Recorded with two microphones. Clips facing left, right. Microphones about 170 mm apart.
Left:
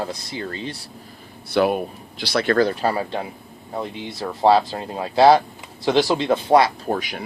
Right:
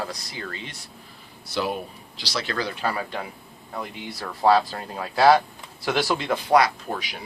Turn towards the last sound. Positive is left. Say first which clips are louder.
# left 7 dB
turn(degrees=45)  # may be behind; listen again after turning